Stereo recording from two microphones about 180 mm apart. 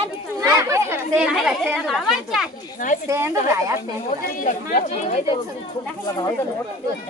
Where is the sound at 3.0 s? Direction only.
15° right (ahead or behind).